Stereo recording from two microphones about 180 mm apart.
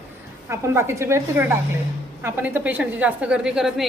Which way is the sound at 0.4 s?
15° right (ahead or behind).